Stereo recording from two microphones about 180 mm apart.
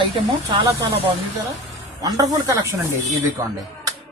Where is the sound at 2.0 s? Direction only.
20° right (ahead or behind).